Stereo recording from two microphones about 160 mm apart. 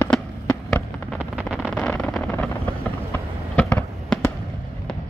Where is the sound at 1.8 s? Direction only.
5° left (ahead or behind).